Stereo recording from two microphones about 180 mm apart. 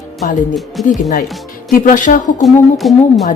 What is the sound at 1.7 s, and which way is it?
Speech, 45° left (ahead or behind).